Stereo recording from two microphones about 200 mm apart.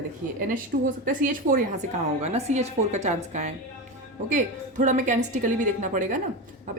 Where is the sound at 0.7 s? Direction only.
40° right (ahead or behind).